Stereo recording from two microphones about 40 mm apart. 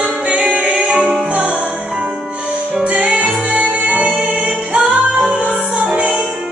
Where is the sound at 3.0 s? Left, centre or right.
Right.